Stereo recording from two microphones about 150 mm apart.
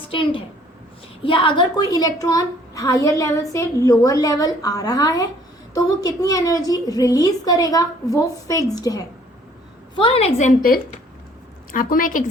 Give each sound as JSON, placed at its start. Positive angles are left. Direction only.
{"t": 0.1, "sound": "a woman's voice", "side_deg": 35}
{"t": 10.0, "sound": "a woman's voice", "side_deg": 40}
{"t": 11.7, "sound": "a woman's voice", "side_deg": 70}